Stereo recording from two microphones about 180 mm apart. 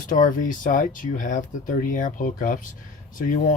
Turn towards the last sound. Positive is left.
turn(degrees=45)  # may be behind; listen again after turning